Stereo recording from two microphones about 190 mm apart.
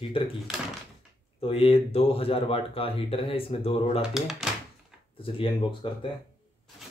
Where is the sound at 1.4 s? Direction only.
30° left (ahead or behind).